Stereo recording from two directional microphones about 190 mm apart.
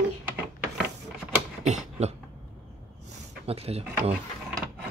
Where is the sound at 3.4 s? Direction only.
30° right (ahead or behind).